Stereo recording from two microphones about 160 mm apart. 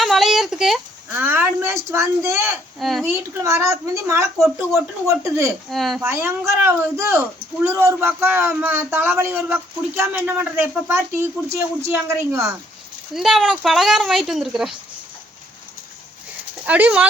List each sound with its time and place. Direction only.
0.0 s a sound: centre (ahead or behind)
1.1 s speech: 15° right (ahead or behind)
2.8 s a woman's voice: centre (ahead or behind)
3.1 s a woman's voice: 20° right (ahead or behind)
5.7 s a woman's voice: centre (ahead or behind)
6.0 s speech: 15° right (ahead or behind)
13.1 s a woman's voice: centre (ahead or behind)
16.6 s speech: 10° right (ahead or behind)